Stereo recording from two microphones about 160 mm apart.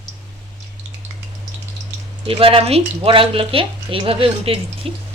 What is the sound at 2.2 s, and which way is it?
Speech, 35° right (ahead or behind).